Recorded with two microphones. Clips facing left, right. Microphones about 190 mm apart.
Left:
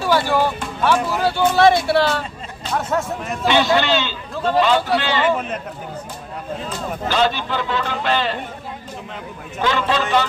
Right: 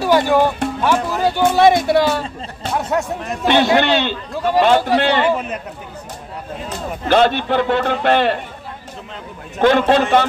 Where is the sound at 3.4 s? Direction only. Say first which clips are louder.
Right 3 dB; 55° right (ahead or behind).